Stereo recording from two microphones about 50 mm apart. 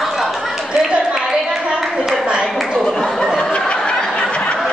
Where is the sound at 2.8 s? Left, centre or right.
Centre; by 4.5 s left.